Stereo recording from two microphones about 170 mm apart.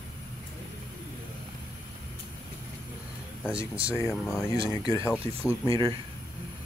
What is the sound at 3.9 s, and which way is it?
Speech, 15° left (ahead or behind).